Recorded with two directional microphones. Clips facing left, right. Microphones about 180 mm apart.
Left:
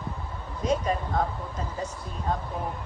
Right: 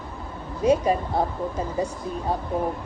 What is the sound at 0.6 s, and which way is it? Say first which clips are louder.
Speech: right 6 dB; 10° right (ahead or behind).